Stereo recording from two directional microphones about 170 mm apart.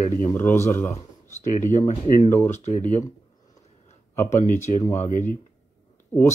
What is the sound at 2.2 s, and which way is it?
Speech, 15° left (ahead or behind).